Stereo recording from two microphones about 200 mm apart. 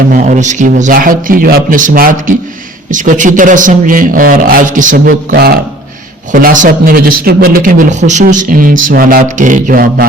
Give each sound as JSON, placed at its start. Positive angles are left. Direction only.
{"t": 0.1, "sound": "a man's voice", "side_deg": -40}